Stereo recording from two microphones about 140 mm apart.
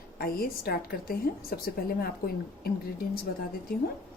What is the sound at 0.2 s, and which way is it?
A woman's voice, 90° left.